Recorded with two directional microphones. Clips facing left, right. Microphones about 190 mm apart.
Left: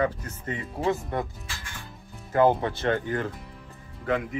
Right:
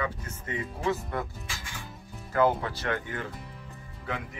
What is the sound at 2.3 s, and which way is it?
Speech, 25° left (ahead or behind).